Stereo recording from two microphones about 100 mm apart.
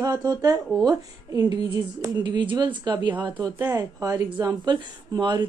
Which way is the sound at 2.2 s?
50° right (ahead or behind).